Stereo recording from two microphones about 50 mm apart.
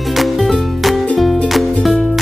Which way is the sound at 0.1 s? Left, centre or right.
Centre.